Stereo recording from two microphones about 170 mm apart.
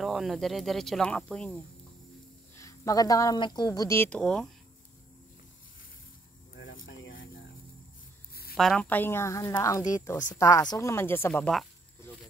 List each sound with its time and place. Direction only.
0.0 s speech: centre (ahead or behind)
2.6 s speech: 20° left (ahead or behind); by 4.5 s 5° left (ahead or behind)
6.5 s a sound: 90° left
8.5 s speech: 5° left (ahead or behind)